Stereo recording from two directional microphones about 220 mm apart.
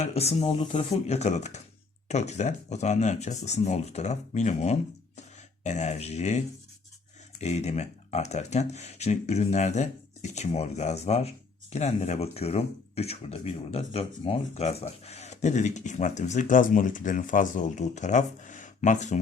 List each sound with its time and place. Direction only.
0.0 s speech: 30° left (ahead or behind)